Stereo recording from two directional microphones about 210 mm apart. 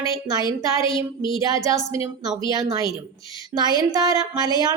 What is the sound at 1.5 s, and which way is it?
A woman's voice, 15° right (ahead or behind).